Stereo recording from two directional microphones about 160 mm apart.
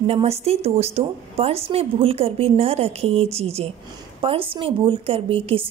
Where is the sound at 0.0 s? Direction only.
40° right (ahead or behind).